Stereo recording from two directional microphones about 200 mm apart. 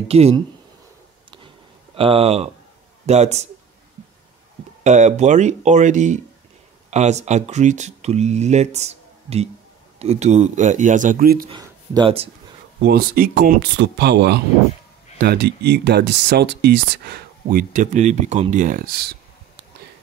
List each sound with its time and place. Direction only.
0.1 s speech: 30° right (ahead or behind)
2.0 s speech: 30° right (ahead or behind)
4.8 s speech: 35° right (ahead or behind)
11.4 s speech: 20° right (ahead or behind)
12.8 s speech: 50° right (ahead or behind)